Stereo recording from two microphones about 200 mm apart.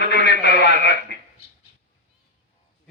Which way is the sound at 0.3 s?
60° left (ahead or behind).